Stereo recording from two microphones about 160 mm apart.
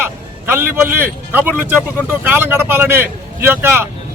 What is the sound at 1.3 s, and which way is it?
Speech, 10° right (ahead or behind).